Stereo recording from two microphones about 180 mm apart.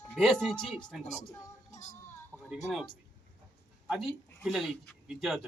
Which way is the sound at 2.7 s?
Centre (ahead or behind).